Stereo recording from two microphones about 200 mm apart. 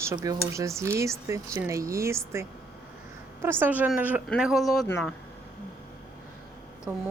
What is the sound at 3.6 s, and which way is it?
Speech, 10° right (ahead or behind).